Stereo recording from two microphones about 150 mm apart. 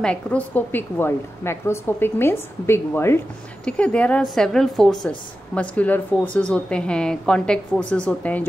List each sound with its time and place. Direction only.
0.0 s a woman's voice: 5° left (ahead or behind)